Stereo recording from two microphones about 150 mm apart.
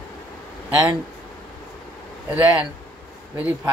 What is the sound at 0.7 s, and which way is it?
Speech, 10° right (ahead or behind).